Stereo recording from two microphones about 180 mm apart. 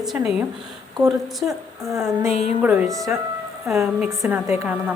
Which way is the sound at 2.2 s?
40° left (ahead or behind).